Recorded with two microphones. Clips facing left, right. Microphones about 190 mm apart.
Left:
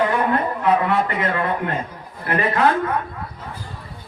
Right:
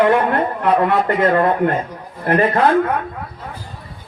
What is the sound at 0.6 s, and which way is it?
A man's voice, 50° right (ahead or behind).